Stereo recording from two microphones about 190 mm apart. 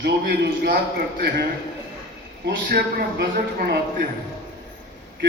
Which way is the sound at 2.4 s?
55° right (ahead or behind).